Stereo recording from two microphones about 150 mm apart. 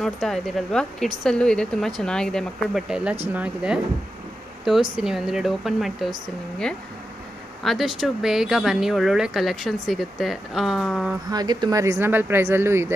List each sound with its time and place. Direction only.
0.0 s speech: centre (ahead or behind)
7.6 s speech: centre (ahead or behind)
11.2 s speech: 25° right (ahead or behind)